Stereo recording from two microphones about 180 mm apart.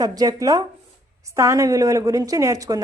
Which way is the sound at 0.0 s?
20° right (ahead or behind).